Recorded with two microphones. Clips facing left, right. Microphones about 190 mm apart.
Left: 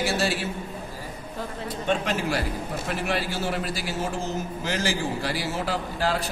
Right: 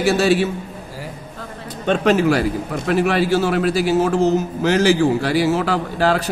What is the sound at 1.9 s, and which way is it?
A man's voice, 85° right.